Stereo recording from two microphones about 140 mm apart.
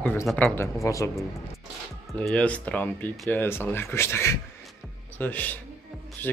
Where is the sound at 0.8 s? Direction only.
20° left (ahead or behind).